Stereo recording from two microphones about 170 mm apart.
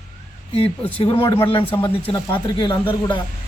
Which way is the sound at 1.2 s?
15° left (ahead or behind).